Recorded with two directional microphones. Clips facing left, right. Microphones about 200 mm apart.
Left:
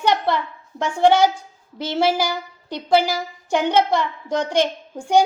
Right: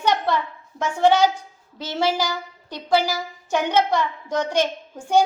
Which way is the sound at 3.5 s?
10° left (ahead or behind).